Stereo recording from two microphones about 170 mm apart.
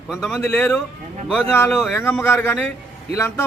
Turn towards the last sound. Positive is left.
turn(degrees=15)  # may be behind; listen again after turning